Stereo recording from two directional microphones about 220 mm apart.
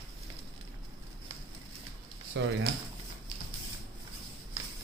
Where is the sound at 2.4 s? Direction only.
55° right (ahead or behind).